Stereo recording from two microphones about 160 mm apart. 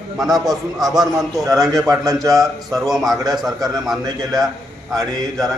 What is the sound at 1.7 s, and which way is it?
Speech, 20° right (ahead or behind).